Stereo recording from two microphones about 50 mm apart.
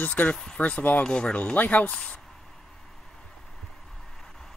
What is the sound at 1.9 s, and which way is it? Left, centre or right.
Speech, centre.